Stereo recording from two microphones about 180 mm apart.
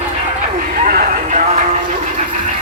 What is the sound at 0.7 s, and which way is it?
Vehicle, 55° right (ahead or behind).